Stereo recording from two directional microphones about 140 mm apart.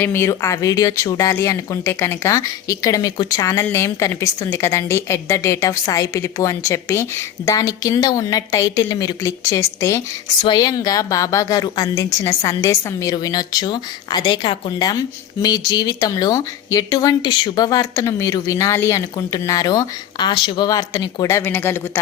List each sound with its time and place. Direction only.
0.0 s a woman's voice: 15° left (ahead or behind)